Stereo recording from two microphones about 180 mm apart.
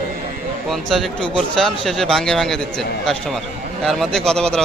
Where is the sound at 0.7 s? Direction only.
Centre (ahead or behind).